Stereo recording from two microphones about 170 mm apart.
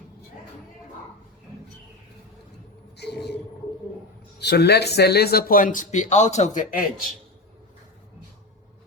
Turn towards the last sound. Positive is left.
turn(degrees=55)  # may be behind; listen again after turning